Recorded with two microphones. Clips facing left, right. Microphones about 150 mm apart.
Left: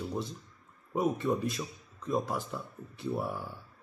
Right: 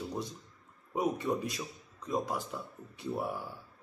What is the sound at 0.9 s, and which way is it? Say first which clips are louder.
Speech: left 2 dB; 15° right (ahead or behind).